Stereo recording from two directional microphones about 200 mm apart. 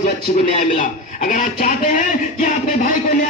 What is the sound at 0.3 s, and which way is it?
Speech, 40° left (ahead or behind).